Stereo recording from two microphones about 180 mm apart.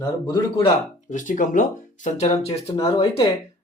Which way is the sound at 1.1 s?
45° left (ahead or behind).